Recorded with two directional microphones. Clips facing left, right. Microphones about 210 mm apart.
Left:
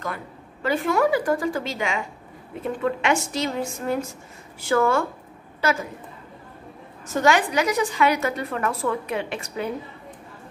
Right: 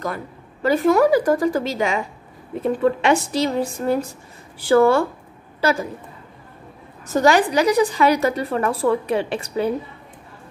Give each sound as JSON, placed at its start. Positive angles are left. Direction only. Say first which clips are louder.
{"t": 0.0, "sound": "a woman's voice", "louder": "right 4 dB", "side_deg": -40}
{"t": 7.2, "sound": "a woman's voice", "louder": "right 4 dB", "side_deg": -35}